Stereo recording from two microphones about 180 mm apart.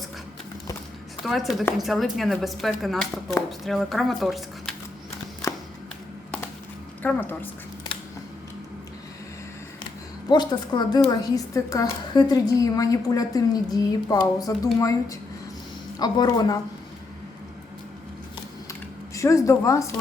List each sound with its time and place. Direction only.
1.2 s speech: centre (ahead or behind)
7.0 s a woman's voice: 10° left (ahead or behind)
10.2 s a woman's voice: 25° left (ahead or behind)
18.7 s a sound: 15° left (ahead or behind)